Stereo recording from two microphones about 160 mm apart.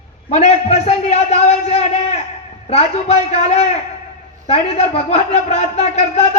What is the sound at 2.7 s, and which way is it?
A man's voice, 40° left (ahead or behind).